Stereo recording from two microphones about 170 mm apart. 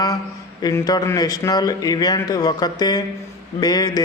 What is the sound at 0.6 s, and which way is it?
A man's voice, 20° left (ahead or behind).